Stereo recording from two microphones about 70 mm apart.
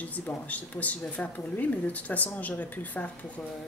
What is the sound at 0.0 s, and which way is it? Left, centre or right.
Speech, left.